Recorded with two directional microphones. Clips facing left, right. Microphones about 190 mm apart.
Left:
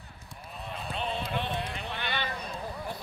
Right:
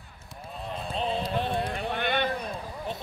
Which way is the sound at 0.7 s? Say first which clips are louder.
Right 4 dB; 35° right (ahead or behind).